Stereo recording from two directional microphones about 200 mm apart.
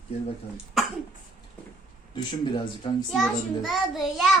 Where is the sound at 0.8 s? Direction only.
Centre (ahead or behind).